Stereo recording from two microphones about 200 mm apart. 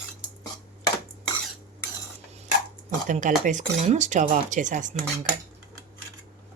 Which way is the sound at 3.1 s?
40° right (ahead or behind).